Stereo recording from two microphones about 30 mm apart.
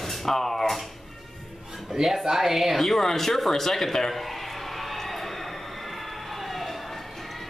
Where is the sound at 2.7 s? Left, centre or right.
Centre.